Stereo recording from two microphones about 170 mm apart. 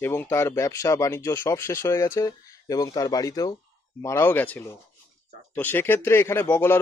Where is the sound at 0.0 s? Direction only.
15° left (ahead or behind).